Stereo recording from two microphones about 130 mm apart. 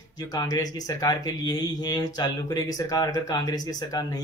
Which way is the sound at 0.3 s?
30° left (ahead or behind).